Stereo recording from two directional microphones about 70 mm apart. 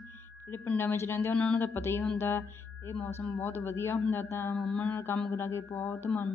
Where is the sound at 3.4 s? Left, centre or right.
Left.